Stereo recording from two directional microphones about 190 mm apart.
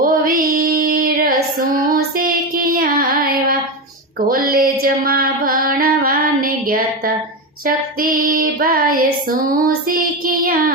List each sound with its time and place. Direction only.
0.0 s female singing: 50° right (ahead or behind)
2.1 s child singing: 50° right (ahead or behind)
4.4 s music: 50° right (ahead or behind)
7.6 s female singing: 50° right (ahead or behind)